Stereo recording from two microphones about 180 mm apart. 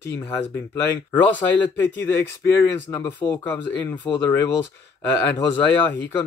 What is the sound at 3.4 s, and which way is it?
Speech, 10° left (ahead or behind).